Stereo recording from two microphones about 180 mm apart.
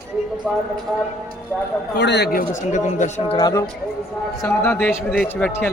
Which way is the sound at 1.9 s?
70° left (ahead or behind).